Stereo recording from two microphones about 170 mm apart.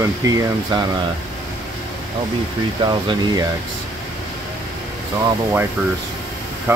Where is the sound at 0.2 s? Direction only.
20° right (ahead or behind).